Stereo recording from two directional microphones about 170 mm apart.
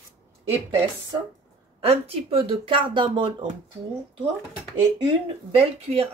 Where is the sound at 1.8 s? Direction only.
35° right (ahead or behind).